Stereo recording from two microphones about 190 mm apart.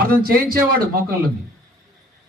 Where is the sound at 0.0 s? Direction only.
50° right (ahead or behind).